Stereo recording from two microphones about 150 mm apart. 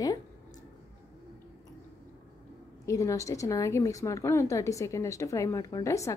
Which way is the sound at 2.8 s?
20° left (ahead or behind).